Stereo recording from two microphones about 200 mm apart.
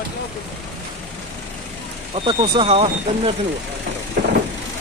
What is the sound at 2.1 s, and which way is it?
Speech, 25° right (ahead or behind).